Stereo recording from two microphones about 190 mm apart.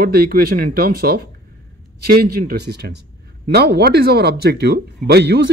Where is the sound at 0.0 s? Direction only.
50° right (ahead or behind).